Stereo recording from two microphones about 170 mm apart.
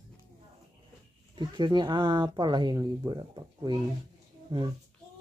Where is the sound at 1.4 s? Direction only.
25° right (ahead or behind).